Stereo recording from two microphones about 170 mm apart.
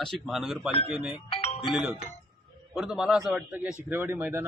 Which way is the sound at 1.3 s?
35° left (ahead or behind).